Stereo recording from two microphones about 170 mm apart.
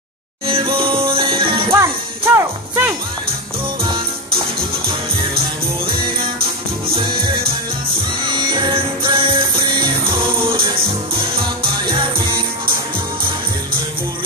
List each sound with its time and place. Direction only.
0.5 s music: 30° right (ahead or behind)
1.7 s music: 15° right (ahead or behind)
8.3 s music: 30° right (ahead or behind)